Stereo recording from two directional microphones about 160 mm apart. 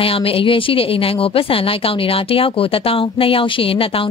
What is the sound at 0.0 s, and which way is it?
A woman's voice, 35° left (ahead or behind).